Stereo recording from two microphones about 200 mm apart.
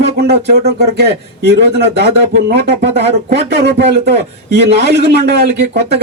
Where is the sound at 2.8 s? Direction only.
35° right (ahead or behind).